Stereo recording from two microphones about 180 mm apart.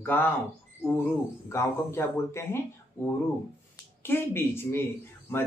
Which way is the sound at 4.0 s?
10° left (ahead or behind).